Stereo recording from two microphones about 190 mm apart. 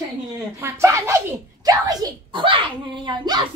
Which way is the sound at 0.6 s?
15° right (ahead or behind).